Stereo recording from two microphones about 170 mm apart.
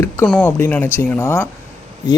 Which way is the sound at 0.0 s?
10° left (ahead or behind).